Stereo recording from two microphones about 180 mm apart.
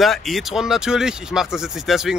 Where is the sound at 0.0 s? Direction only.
Centre (ahead or behind).